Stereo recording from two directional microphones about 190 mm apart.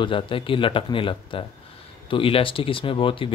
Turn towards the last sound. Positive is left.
turn(degrees=25)  # may be behind; listen again after turning